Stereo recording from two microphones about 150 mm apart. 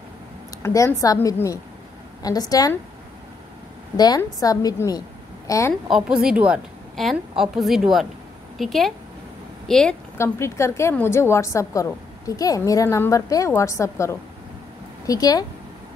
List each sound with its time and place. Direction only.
0.6 s a woman's voice: 20° left (ahead or behind)
3.9 s a woman's voice: 25° left (ahead or behind)
5.9 s a woman's voice: 5° right (ahead or behind)
10.1 s a woman's voice: 20° left (ahead or behind)